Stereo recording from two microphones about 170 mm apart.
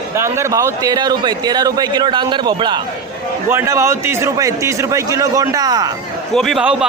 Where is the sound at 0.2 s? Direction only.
15° right (ahead or behind).